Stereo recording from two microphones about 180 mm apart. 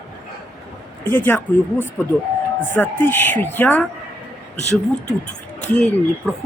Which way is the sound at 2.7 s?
10° left (ahead or behind).